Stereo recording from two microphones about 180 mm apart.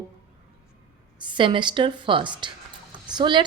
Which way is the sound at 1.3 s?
25° right (ahead or behind).